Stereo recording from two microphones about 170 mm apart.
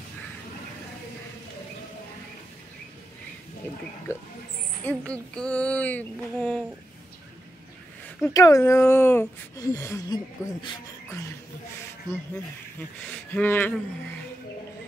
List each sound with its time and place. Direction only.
4.1 s speech: 15° left (ahead or behind)
8.3 s speech: 20° left (ahead or behind)
13.1 s speech: 10° left (ahead or behind)